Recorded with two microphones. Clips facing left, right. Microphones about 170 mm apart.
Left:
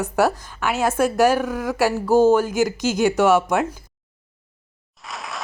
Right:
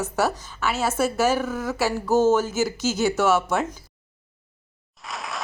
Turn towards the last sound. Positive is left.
turn(degrees=0)  # may be behind; listen again after turning